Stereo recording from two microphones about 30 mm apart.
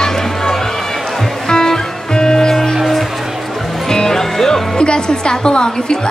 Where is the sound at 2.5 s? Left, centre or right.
Centre.